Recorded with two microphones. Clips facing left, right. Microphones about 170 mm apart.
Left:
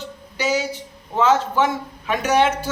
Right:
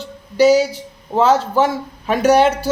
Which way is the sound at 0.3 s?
35° right (ahead or behind).